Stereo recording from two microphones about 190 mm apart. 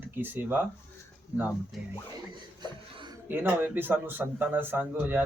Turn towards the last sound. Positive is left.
turn(degrees=-10)  # may be behind; listen again after turning